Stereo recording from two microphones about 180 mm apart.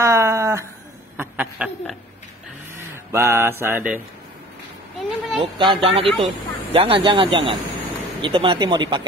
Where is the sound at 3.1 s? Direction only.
15° right (ahead or behind).